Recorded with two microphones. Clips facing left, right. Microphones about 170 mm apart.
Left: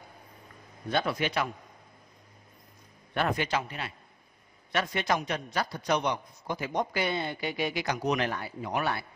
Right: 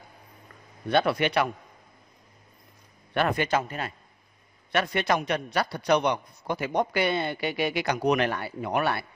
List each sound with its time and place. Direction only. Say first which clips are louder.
0.8 s a man's voice: right 5 dB; 65° right (ahead or behind)
3.2 s a man's voice: right 4 dB; 60° right (ahead or behind)
4.7 s a man's voice: right 4 dB; 65° right (ahead or behind)